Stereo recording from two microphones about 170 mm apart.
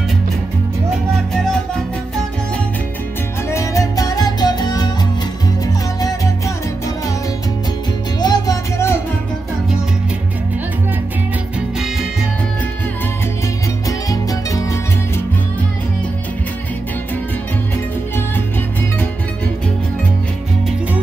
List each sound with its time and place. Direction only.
3.4 s music: 20° left (ahead or behind)
5.9 s music: 20° left (ahead or behind)
8.2 s music: 20° left (ahead or behind)
13.8 s music: 20° left (ahead or behind)